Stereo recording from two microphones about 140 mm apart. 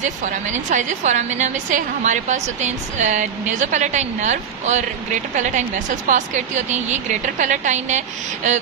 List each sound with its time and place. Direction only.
0.0 s a woman's voice: 60° right (ahead or behind)